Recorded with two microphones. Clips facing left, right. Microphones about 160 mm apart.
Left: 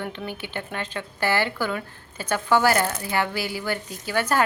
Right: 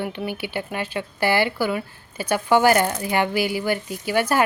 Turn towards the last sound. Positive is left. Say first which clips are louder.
# right 3 dB
turn(degrees=-10)  # may be behind; listen again after turning